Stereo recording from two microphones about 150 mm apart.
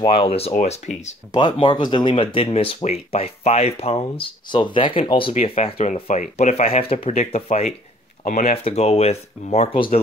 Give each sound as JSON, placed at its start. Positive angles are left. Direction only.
{"t": 0.0, "sound": "speech", "side_deg": 40}
{"t": 1.3, "sound": "speech", "side_deg": 30}
{"t": 8.2, "sound": "speech", "side_deg": 55}
{"t": 8.6, "sound": "speech", "side_deg": 45}